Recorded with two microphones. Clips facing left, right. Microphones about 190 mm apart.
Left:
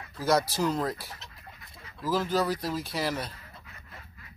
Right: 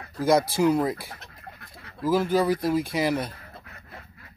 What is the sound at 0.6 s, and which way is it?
Speech, 10° right (ahead or behind).